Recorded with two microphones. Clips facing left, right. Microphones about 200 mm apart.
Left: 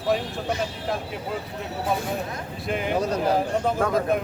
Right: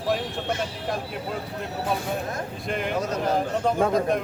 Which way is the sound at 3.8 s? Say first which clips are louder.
Right 3 dB; 25° right (ahead or behind).